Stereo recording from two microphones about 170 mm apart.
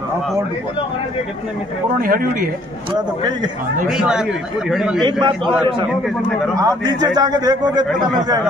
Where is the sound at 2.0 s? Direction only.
55° right (ahead or behind).